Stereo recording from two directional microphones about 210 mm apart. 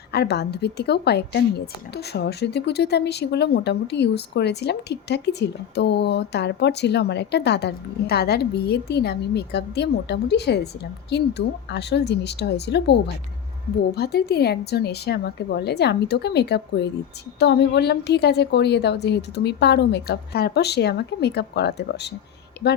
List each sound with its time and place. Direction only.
0.1 s a woman's voice: 50° left (ahead or behind)